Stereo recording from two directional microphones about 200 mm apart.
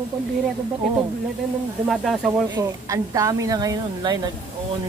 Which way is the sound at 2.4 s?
15° right (ahead or behind).